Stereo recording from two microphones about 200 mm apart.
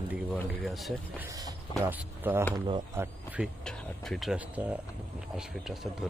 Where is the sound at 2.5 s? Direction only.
20° right (ahead or behind).